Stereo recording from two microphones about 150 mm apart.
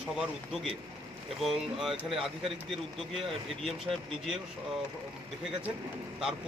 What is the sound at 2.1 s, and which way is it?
Speech, 35° right (ahead or behind).